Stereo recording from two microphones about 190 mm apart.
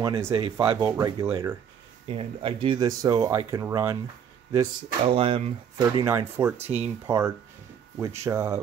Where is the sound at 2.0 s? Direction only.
30° right (ahead or behind).